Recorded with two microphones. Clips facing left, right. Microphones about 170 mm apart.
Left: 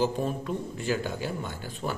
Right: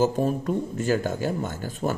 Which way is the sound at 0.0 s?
45° right (ahead or behind).